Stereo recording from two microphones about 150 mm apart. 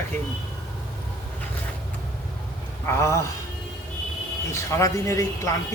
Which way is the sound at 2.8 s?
15° left (ahead or behind).